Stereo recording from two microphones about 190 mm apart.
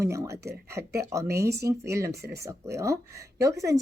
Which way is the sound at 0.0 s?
15° right (ahead or behind).